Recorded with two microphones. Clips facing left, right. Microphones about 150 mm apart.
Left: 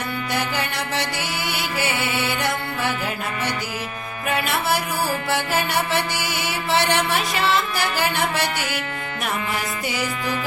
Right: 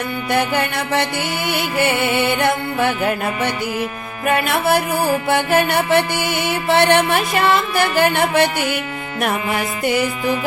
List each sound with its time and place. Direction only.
0.3 s music: 55° right (ahead or behind)